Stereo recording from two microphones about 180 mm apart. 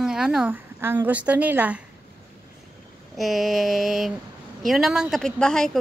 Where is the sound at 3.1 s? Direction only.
Centre (ahead or behind).